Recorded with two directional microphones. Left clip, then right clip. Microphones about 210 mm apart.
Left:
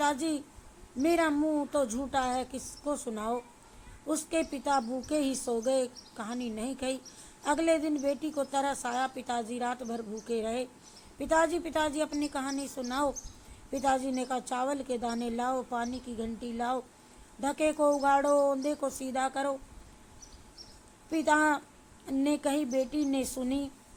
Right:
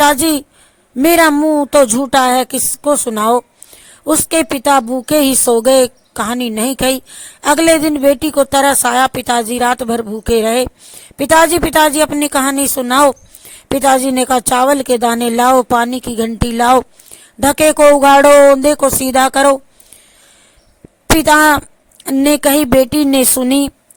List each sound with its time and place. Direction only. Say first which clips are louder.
0.0 s a woman's voice: right 19 dB; 50° right (ahead or behind)
21.2 s a woman's voice: right 17 dB; 50° right (ahead or behind)